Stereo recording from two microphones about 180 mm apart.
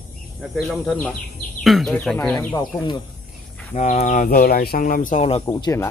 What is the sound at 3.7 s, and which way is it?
Speech, 45° left (ahead or behind).